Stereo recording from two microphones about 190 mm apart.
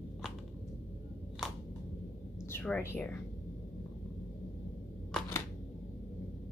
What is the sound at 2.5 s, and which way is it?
Speech, 10° left (ahead or behind).